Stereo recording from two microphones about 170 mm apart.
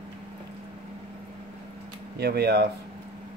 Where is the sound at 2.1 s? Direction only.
70° right (ahead or behind).